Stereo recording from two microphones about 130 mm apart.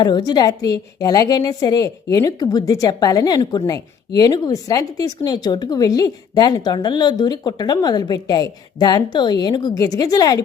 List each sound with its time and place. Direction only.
0.0 s a woman's voice: 30° left (ahead or behind)